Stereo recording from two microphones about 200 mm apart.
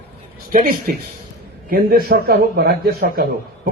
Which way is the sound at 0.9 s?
45° right (ahead or behind).